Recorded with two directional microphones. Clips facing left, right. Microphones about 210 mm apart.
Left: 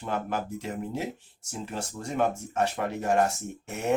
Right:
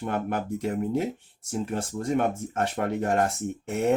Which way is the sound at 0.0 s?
55° right (ahead or behind).